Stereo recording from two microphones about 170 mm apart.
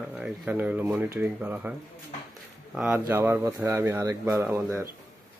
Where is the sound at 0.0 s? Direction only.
5° right (ahead or behind).